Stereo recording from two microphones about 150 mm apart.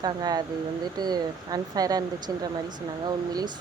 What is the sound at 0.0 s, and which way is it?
Speech, 25° right (ahead or behind).